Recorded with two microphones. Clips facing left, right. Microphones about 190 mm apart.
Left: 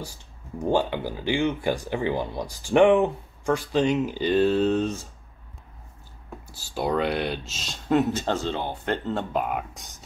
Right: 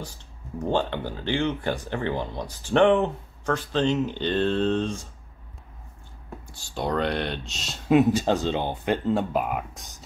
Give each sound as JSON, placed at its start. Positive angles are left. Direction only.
{"t": 0.6, "sound": "speech", "side_deg": 10}
{"t": 6.4, "sound": "speech", "side_deg": 5}
{"t": 7.9, "sound": "speech", "side_deg": -10}